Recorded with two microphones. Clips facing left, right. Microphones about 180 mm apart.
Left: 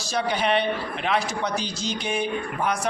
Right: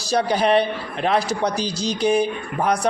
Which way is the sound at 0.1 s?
35° right (ahead or behind).